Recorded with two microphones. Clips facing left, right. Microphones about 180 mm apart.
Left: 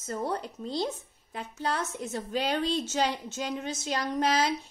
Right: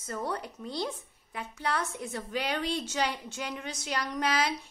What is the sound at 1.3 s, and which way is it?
A woman's voice, 35° left (ahead or behind).